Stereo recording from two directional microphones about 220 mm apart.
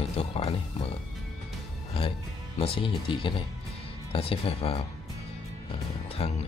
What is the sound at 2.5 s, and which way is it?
Speech, 25° left (ahead or behind).